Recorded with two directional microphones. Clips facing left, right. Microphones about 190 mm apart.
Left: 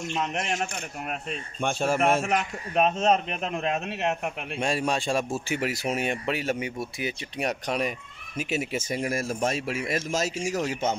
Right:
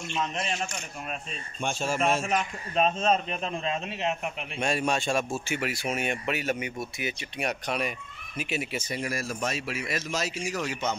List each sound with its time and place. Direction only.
0.2 s a man's voice: 70° left (ahead or behind)
4.6 s speech: 30° left (ahead or behind)